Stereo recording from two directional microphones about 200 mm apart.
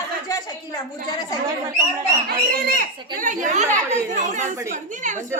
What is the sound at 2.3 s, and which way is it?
Speech, 45° right (ahead or behind).